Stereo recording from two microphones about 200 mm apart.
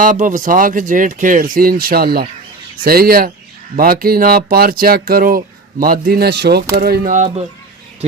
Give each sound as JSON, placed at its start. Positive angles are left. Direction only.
{"t": 0.0, "sound": "speech", "side_deg": -40}